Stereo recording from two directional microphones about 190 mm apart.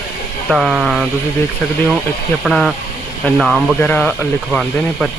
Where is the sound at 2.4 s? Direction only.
Centre (ahead or behind).